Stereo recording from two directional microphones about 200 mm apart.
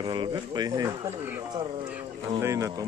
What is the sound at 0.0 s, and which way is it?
Speech, 20° right (ahead or behind).